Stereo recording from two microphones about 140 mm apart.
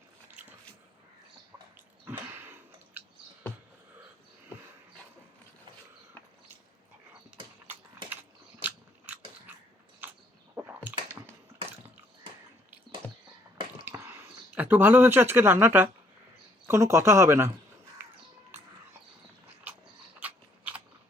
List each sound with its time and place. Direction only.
1.7 s chewing: 15° right (ahead or behind)
8.6 s biting: 15° right (ahead or behind)
10.0 s a sound: 15° right (ahead or behind)
13.8 s a sound: 15° right (ahead or behind)
16.6 s speech: 20° right (ahead or behind)
20.1 s biting: 10° right (ahead or behind)